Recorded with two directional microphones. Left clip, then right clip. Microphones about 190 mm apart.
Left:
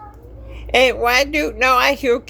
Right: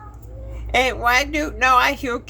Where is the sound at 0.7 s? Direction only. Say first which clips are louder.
Left 3 dB; 25° left (ahead or behind).